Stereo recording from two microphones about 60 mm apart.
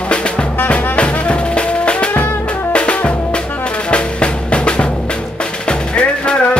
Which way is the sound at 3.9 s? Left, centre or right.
Centre.